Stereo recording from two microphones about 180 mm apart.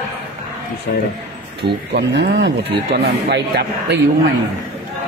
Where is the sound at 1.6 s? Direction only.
70° right (ahead or behind).